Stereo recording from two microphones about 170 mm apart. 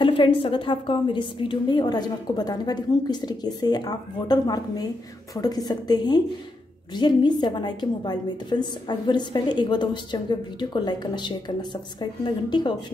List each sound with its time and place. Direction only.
0.0 s a woman's voice: 30° left (ahead or behind)